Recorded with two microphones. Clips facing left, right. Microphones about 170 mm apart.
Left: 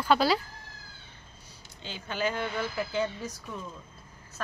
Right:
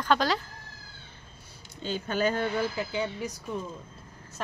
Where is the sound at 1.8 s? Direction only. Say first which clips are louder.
Right 4 dB; 45° right (ahead or behind).